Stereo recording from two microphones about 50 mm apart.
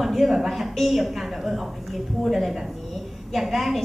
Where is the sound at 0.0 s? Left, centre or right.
Centre.